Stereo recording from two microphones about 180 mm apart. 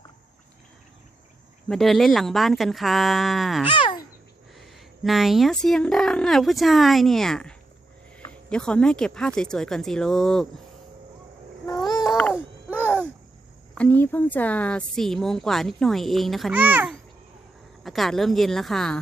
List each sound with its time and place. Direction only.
1.6 s speech: centre (ahead or behind)
3.7 s speech: 25° left (ahead or behind)
4.5 s speech: centre (ahead or behind)
13.7 s speech: 10° left (ahead or behind); by 16.9 s 10° right (ahead or behind)
17.8 s speech: centre (ahead or behind)